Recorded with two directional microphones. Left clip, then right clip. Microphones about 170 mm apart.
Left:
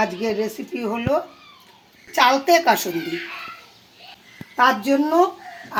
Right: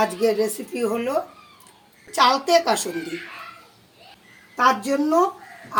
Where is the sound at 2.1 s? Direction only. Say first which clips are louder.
Left 1 dB; 30° left (ahead or behind).